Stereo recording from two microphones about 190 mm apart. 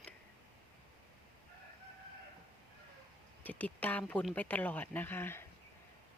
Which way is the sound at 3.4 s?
10° left (ahead or behind).